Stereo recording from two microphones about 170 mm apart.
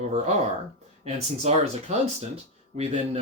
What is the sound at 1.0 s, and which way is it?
Speech, 40° right (ahead or behind).